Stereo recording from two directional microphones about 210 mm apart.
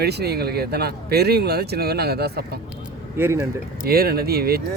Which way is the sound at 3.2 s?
10° right (ahead or behind).